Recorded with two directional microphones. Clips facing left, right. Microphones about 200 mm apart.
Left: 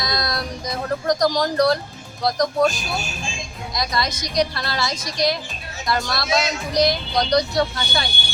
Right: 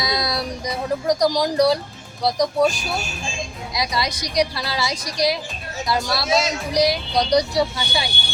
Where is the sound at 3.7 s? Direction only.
10° right (ahead or behind).